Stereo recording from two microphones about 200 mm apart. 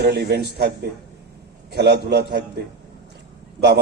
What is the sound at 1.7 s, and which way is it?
Speech, 55° right (ahead or behind).